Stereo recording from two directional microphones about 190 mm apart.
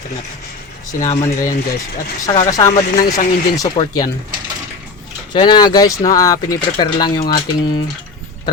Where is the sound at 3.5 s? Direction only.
20° left (ahead or behind).